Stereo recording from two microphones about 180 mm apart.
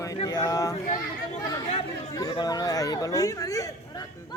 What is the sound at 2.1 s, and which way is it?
Speech, 25° left (ahead or behind).